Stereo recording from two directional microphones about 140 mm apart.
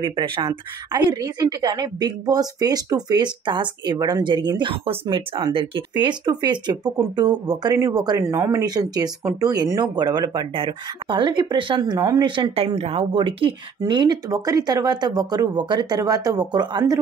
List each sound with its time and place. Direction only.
0.0 s speech: 35° right (ahead or behind)